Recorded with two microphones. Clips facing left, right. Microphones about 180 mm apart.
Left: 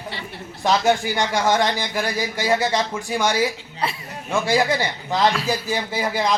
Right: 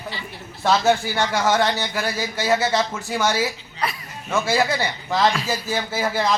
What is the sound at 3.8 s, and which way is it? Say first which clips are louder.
Speech: left 1 dB; 25° left (ahead or behind).